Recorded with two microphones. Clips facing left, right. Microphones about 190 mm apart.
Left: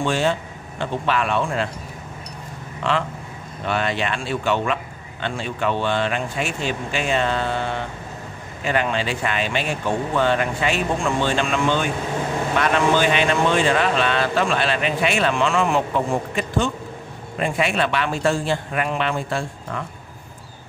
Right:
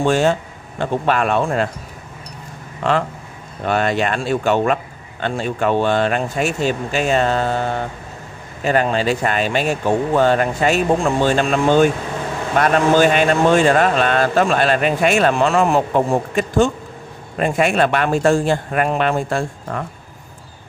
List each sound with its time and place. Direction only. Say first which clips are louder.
0.0 s a man's voice: right 5 dB; 45° right (ahead or behind)
2.8 s a man's voice: right 4 dB; 45° right (ahead or behind)